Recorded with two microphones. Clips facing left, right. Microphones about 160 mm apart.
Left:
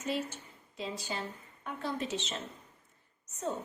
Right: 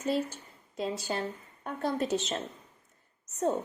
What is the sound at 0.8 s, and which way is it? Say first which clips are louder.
A woman's voice: right 6 dB; 45° right (ahead or behind).